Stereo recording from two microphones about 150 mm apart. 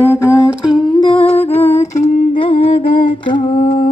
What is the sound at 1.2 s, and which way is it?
Humming, 40° left (ahead or behind).